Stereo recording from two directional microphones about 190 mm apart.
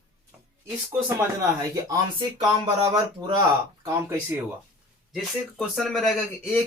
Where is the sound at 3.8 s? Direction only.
15° right (ahead or behind).